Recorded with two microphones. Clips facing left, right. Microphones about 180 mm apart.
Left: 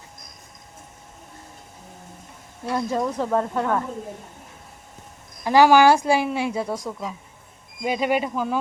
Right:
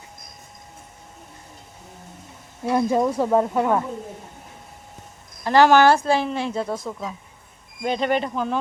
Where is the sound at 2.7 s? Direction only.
15° right (ahead or behind).